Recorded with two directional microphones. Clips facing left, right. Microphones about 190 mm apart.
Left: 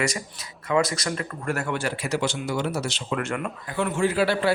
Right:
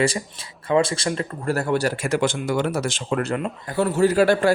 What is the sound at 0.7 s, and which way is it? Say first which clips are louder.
A man's voice: right 3 dB; 30° right (ahead or behind).